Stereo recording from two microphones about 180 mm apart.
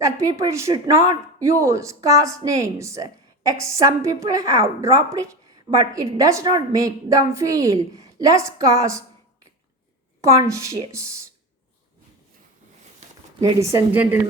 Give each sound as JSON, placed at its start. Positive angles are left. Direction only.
{"t": 0.3, "sound": "speech", "side_deg": -15}
{"t": 10.2, "sound": "speech", "side_deg": -15}
{"t": 13.4, "sound": "speech", "side_deg": -15}